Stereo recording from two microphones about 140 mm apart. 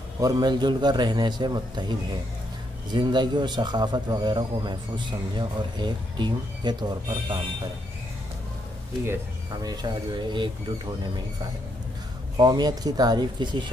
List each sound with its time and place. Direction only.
0.2 s a man's voice: 30° right (ahead or behind)
9.0 s speech: 20° right (ahead or behind)
12.4 s speech: 30° right (ahead or behind)